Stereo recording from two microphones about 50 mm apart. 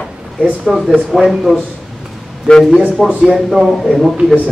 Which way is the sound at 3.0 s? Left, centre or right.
Centre.